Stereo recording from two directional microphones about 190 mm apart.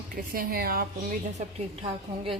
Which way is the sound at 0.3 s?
50° right (ahead or behind).